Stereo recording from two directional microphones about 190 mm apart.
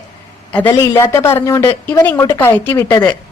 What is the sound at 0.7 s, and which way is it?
Speech, 15° left (ahead or behind).